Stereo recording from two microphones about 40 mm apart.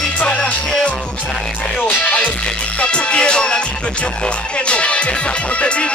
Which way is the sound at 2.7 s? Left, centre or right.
Left.